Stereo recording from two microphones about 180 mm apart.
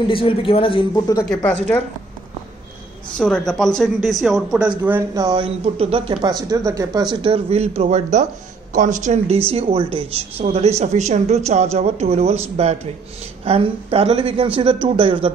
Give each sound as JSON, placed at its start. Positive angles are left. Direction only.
{"t": 0.1, "sound": "speech", "side_deg": 30}
{"t": 1.4, "sound": "a woman's voice", "side_deg": 10}
{"t": 3.2, "sound": "speech", "side_deg": 5}
{"t": 6.2, "sound": "a woman's voice", "side_deg": -20}